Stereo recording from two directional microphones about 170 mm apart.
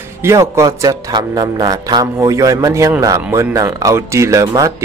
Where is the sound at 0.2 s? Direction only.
15° right (ahead or behind).